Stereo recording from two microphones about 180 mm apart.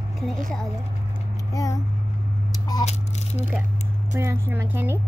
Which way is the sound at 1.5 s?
20° left (ahead or behind).